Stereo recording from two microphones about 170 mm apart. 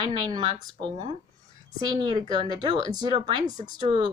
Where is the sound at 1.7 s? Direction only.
25° right (ahead or behind).